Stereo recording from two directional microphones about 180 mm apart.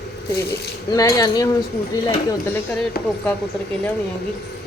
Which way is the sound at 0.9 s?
20° left (ahead or behind).